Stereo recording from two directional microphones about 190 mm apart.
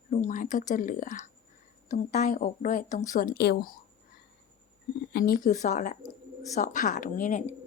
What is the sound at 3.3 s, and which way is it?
Speech, 60° left (ahead or behind).